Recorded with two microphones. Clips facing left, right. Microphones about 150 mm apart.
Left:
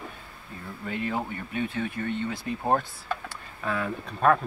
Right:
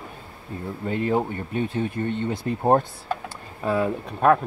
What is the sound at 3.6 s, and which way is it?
Speech, 20° right (ahead or behind).